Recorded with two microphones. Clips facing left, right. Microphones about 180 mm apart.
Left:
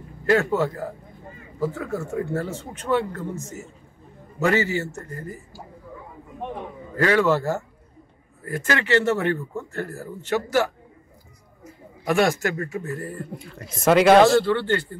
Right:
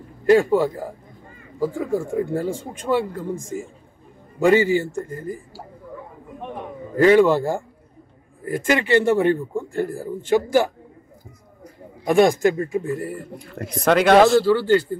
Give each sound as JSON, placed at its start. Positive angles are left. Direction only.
{"t": 0.3, "sound": "speech", "side_deg": -10}
{"t": 7.0, "sound": "speech", "side_deg": -15}
{"t": 12.1, "sound": "speech", "side_deg": -15}
{"t": 13.7, "sound": "speech", "side_deg": 0}